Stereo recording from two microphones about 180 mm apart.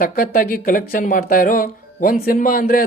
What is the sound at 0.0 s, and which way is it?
Speech, 50° left (ahead or behind).